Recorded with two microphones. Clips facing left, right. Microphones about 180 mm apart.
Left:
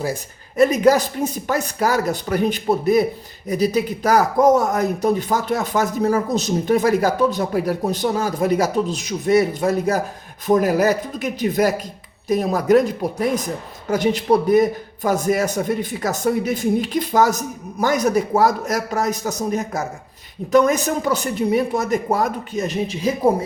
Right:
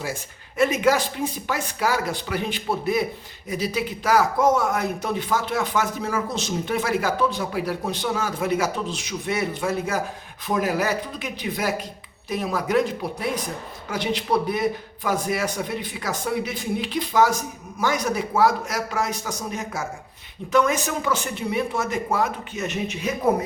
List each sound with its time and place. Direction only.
0.0 s speech: 40° left (ahead or behind)